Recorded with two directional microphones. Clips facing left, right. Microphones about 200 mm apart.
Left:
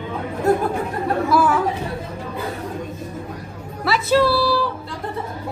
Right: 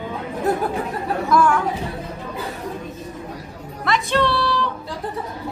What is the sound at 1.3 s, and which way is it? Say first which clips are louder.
Speech: right 1 dB; 5° left (ahead or behind).